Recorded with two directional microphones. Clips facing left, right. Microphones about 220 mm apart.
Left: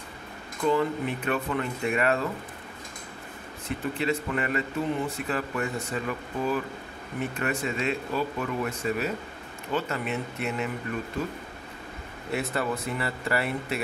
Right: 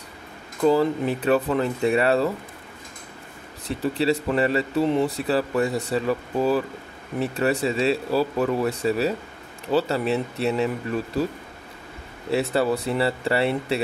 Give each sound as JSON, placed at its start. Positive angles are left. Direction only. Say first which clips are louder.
{"t": 0.7, "sound": "speech", "louder": "right 6 dB", "side_deg": -35}
{"t": 3.6, "sound": "speech", "louder": "right 6 dB", "side_deg": -35}
{"t": 12.3, "sound": "speech", "louder": "right 7 dB", "side_deg": -30}